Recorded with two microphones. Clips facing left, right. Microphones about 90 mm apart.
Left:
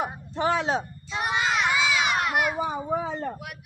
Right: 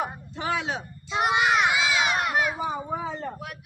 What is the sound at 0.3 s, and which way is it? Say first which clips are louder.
Speech: left 8 dB; 35° left (ahead or behind).